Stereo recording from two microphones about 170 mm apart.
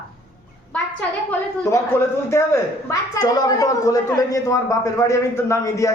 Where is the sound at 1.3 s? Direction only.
15° left (ahead or behind).